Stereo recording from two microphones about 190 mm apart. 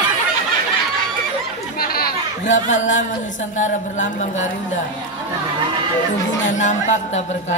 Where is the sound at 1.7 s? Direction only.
50° left (ahead or behind).